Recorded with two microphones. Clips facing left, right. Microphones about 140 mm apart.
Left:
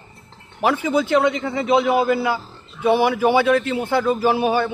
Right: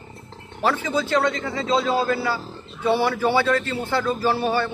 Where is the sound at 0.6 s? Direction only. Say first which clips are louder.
Left 4 dB; 10° left (ahead or behind).